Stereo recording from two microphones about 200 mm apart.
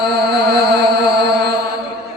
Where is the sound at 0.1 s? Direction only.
55° right (ahead or behind).